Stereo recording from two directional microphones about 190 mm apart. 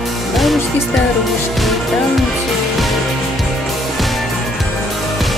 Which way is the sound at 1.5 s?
Centre (ahead or behind).